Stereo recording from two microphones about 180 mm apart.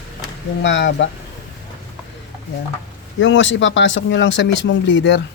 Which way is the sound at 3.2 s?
90° left.